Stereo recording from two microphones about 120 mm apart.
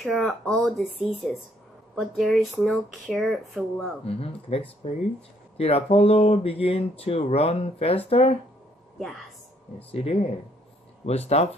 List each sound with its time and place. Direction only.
0.0 s speech: centre (ahead or behind)
4.0 s speech: 55° left (ahead or behind)
8.9 s a woman's voice: centre (ahead or behind)
9.8 s speech: 55° left (ahead or behind)